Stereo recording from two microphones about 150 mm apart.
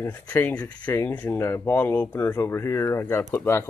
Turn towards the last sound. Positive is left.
turn(degrees=20)  # may be behind; listen again after turning